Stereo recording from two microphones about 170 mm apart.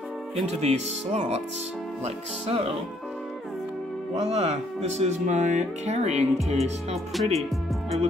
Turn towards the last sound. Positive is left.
turn(degrees=0)  # may be behind; listen again after turning